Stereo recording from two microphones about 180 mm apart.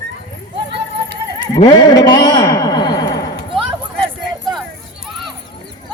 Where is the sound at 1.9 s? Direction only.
20° left (ahead or behind).